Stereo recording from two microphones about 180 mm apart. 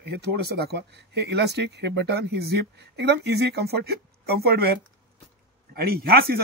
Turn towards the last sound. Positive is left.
turn(degrees=-60)  # may be behind; listen again after turning